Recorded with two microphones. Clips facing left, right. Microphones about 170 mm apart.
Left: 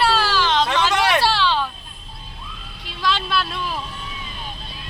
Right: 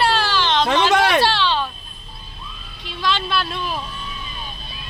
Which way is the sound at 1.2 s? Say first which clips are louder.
Right 1 dB; 5° left (ahead or behind).